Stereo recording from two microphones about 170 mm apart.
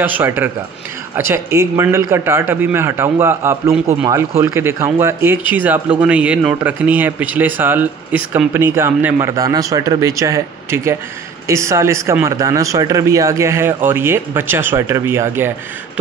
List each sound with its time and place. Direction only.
0.0 s speech: 10° right (ahead or behind)